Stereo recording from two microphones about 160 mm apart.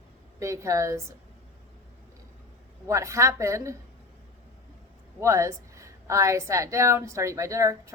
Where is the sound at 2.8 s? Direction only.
20° right (ahead or behind).